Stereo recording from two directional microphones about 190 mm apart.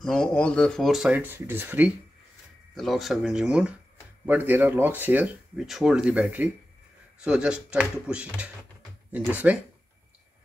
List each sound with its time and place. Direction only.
0.0 s speech: 5° left (ahead or behind)